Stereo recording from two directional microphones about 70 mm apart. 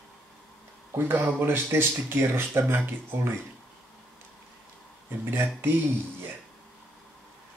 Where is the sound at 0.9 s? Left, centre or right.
Right.